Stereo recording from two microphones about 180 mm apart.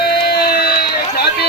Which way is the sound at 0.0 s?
60° left (ahead or behind).